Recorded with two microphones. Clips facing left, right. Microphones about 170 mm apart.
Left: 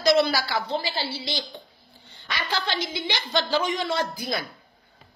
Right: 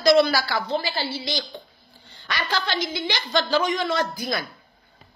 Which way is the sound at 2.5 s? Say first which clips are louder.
Right 2 dB; 25° left (ahead or behind).